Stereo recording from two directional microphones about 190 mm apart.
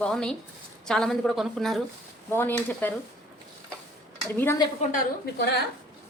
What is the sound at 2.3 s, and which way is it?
Speech, 10° left (ahead or behind).